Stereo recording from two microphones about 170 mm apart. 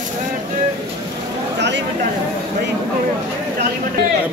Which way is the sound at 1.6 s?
90° right.